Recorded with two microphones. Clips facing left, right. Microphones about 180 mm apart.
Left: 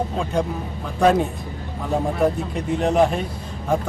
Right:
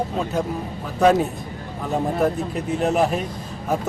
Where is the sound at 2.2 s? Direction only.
5° right (ahead or behind).